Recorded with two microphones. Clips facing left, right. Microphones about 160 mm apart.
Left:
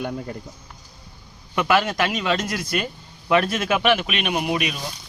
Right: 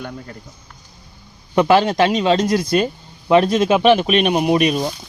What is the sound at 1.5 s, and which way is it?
Speech, 30° right (ahead or behind).